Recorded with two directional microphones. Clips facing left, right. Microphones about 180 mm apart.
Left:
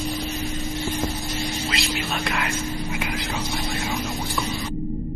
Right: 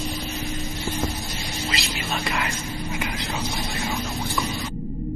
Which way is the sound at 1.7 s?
Centre (ahead or behind).